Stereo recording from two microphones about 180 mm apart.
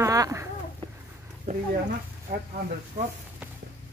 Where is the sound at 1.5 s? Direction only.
35° right (ahead or behind).